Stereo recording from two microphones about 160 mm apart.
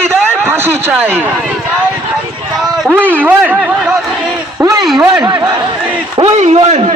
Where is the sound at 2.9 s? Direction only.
10° right (ahead or behind).